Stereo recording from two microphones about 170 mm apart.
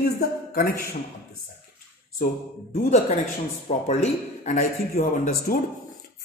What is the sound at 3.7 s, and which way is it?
Speech, 40° left (ahead or behind).